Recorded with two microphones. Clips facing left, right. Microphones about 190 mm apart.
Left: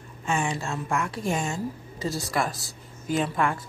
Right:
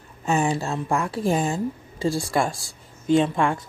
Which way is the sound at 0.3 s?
35° right (ahead or behind).